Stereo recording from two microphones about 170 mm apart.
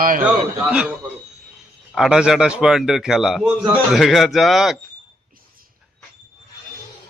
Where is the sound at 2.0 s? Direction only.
5° right (ahead or behind).